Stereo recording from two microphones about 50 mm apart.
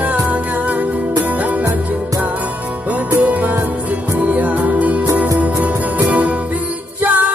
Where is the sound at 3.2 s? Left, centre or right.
Right.